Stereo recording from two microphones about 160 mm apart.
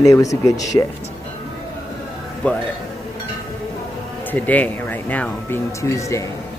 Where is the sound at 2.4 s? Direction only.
10° left (ahead or behind).